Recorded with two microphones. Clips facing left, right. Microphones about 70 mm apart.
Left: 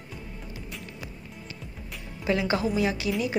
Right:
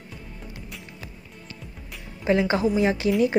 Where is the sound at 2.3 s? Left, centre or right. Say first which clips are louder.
Right 4 dB; right.